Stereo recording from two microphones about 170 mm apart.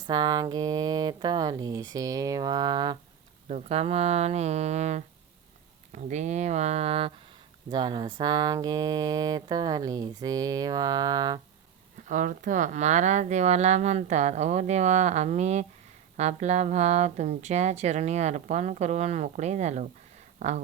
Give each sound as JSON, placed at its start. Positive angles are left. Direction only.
{"t": 0.1, "sound": "speech", "side_deg": -25}
{"t": 3.5, "sound": "speech", "side_deg": -40}
{"t": 12.0, "sound": "speech", "side_deg": -50}